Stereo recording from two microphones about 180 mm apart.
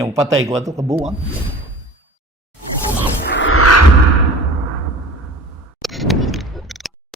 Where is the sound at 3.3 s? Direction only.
90° left.